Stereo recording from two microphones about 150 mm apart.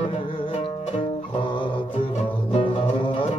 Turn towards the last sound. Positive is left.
turn(degrees=35)  # may be behind; listen again after turning